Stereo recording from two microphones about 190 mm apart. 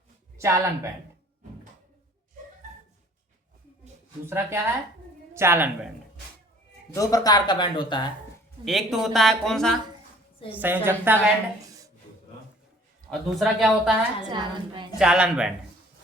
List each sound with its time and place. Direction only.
0.3 s a woman's voice: 15° right (ahead or behind)
4.3 s a woman's voice: 15° right (ahead or behind)
6.9 s speech: 20° left (ahead or behind)
8.6 s speech: centre (ahead or behind)
10.5 s a woman's voice: 10° right (ahead or behind)
13.1 s speech: centre (ahead or behind)
14.3 s a woman's voice: 25° right (ahead or behind)
14.9 s speech: 5° right (ahead or behind)